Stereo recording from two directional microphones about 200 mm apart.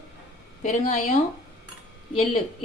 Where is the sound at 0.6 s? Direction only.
40° left (ahead or behind).